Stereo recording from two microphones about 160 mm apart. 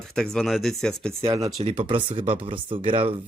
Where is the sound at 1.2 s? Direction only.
20° right (ahead or behind).